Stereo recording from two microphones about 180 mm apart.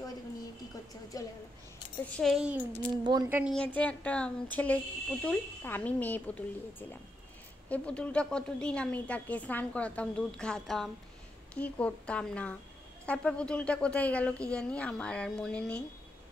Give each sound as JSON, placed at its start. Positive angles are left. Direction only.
{"t": 1.1, "sound": "a woman's voice", "side_deg": 20}
{"t": 2.0, "sound": "a woman's voice", "side_deg": 5}
{"t": 3.0, "sound": "speech", "side_deg": -25}
{"t": 3.3, "sound": "a woman's voice", "side_deg": -10}
{"t": 3.5, "sound": "a woman's voice", "side_deg": 10}